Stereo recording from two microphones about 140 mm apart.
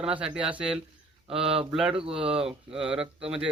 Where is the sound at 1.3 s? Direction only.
40° right (ahead or behind).